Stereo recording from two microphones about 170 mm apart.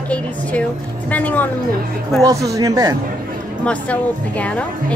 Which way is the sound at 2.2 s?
20° right (ahead or behind).